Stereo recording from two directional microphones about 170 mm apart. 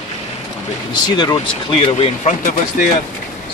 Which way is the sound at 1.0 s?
25° left (ahead or behind).